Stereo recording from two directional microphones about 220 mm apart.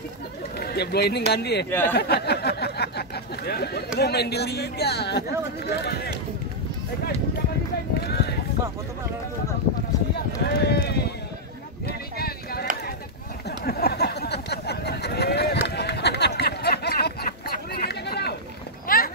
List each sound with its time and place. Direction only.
0.6 s speech: 45° left (ahead or behind)
1.7 s speech: 10° left (ahead or behind)
2.0 s speech: 45° left (ahead or behind)
8.0 s run: 45° left (ahead or behind)
10.1 s speech: 50° left (ahead or behind)
12.2 s a sound: 45° left (ahead or behind)
13.7 s a sound: 45° left (ahead or behind)
18.9 s clip-clop: 40° left (ahead or behind)